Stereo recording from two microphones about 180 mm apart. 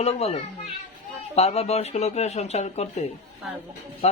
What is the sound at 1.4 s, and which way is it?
A man's voice, 35° left (ahead or behind).